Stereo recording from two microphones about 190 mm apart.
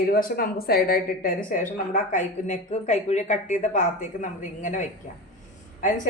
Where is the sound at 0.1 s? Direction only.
50° left (ahead or behind).